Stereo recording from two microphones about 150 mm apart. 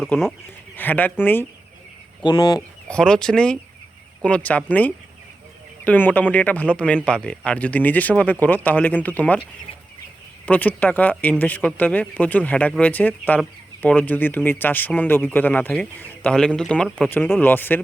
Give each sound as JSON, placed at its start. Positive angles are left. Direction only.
{"t": 0.1, "sound": "speech", "side_deg": 10}
{"t": 2.2, "sound": "speech", "side_deg": 30}
{"t": 2.9, "sound": "speech", "side_deg": 5}
{"t": 10.4, "sound": "speech", "side_deg": 10}